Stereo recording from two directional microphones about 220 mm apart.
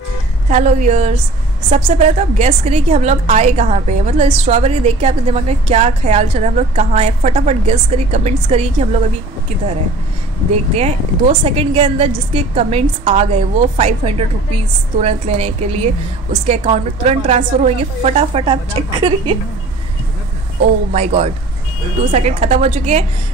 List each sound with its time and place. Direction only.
0.5 s a woman's voice: 35° right (ahead or behind)
10.5 s a woman's voice: 30° right (ahead or behind)
20.9 s a woman's voice: 30° right (ahead or behind)